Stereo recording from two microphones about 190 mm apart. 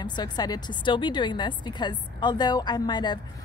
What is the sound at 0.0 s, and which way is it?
A woman's voice, 20° left (ahead or behind).